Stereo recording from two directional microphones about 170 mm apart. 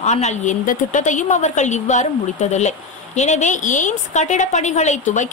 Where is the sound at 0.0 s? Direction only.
40° left (ahead or behind).